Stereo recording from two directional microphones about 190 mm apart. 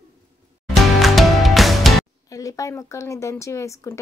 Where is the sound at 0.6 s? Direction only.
Centre (ahead or behind).